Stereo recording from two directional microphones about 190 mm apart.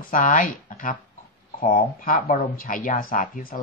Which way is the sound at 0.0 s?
45° left (ahead or behind).